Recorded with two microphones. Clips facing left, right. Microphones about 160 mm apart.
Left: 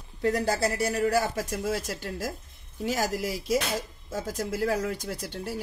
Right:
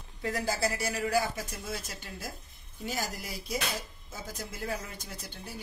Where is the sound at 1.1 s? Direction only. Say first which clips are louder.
Left 4 dB; 85° left.